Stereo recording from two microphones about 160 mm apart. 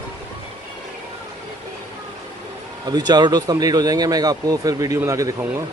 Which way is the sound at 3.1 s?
25° right (ahead or behind).